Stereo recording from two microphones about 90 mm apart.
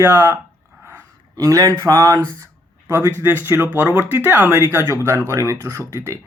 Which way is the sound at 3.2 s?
25° right (ahead or behind).